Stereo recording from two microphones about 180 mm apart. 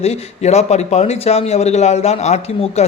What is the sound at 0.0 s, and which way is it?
Speech, 35° left (ahead or behind).